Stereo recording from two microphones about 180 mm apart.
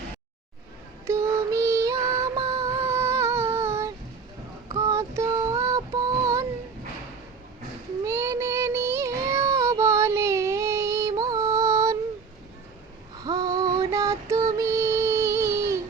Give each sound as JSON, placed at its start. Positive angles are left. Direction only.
{"t": 1.0, "sound": "music", "side_deg": -15}
{"t": 4.7, "sound": "child singing", "side_deg": -15}
{"t": 8.0, "sound": "child singing", "side_deg": -15}
{"t": 13.2, "sound": "child singing", "side_deg": -20}